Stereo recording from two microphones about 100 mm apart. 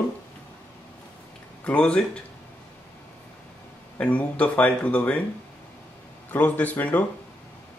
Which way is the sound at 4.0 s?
15° left (ahead or behind).